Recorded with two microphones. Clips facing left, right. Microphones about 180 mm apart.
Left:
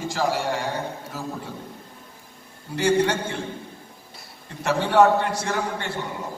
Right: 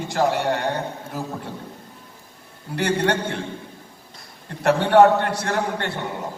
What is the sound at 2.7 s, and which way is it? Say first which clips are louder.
Speech: left 1 dB; 60° right (ahead or behind).